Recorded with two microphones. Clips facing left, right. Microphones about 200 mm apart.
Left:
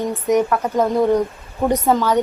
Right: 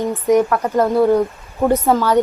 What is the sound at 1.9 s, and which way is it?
Speech, 10° right (ahead or behind).